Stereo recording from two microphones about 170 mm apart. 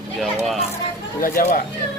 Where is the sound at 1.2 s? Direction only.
55° left (ahead or behind).